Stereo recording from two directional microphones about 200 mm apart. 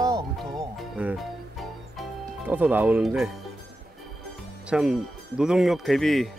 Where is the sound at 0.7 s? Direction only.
5° right (ahead or behind).